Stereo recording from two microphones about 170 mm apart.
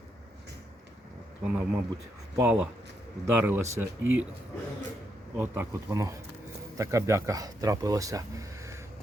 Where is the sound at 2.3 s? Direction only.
10° right (ahead or behind).